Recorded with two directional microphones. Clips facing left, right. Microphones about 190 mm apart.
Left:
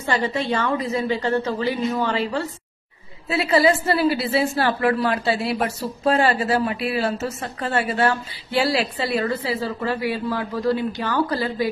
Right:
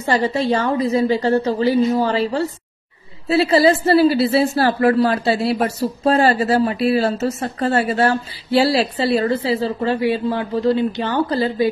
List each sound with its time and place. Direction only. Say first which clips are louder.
0.0 s a woman's voice: right 5 dB; 35° right (ahead or behind)